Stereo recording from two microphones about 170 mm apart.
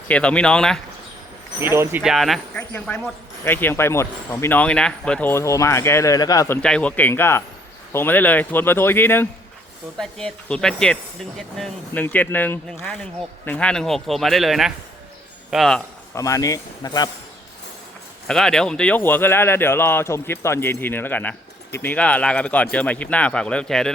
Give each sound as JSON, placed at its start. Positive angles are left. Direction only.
{"t": 0.1, "sound": "a man's voice", "side_deg": 5}
{"t": 1.5, "sound": "speech", "side_deg": -15}
{"t": 6.6, "sound": "a man's voice", "side_deg": 5}
{"t": 16.1, "sound": "speech", "side_deg": 20}
{"t": 18.3, "sound": "speech", "side_deg": 5}